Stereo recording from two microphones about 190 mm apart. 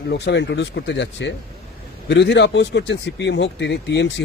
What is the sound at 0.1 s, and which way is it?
A man's voice, 65° left (ahead or behind).